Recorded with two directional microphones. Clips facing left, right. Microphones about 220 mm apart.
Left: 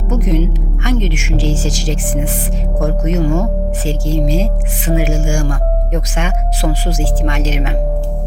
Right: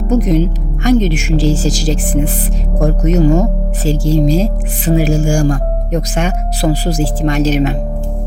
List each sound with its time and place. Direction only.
0.1 s speech: 35° right (ahead or behind)